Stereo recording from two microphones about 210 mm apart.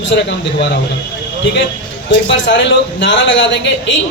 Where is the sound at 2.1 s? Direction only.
55° left (ahead or behind).